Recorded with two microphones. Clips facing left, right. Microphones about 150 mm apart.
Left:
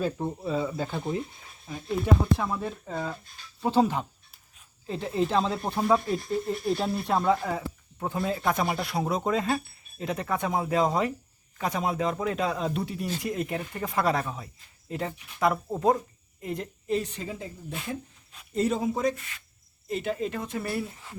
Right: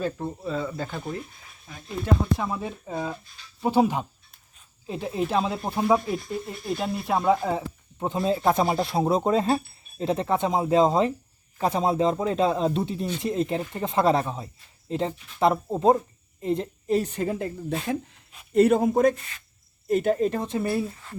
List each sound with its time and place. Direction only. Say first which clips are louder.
0.0 s speech: even; 10° left (ahead or behind)
2.2 s speech: even; 5° right (ahead or behind)
7.3 s speech: right 3 dB; 20° right (ahead or behind)
16.9 s speech: right 5 dB; 45° right (ahead or behind)
19.1 s speech: right 1 dB; 35° right (ahead or behind)
19.9 s speech: right 7 dB; 45° right (ahead or behind)
20.6 s speech: right 5 dB; 25° right (ahead or behind)
20.9 s speech: right 4 dB; 15° left (ahead or behind)